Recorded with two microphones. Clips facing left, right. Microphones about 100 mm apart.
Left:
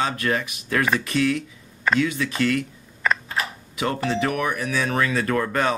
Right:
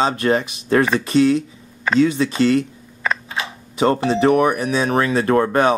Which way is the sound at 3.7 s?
30° right (ahead or behind).